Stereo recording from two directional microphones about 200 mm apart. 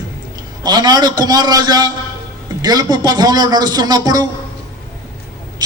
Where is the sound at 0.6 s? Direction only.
20° right (ahead or behind).